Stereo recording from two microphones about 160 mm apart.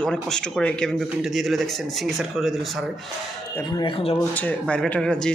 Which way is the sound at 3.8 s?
35° left (ahead or behind).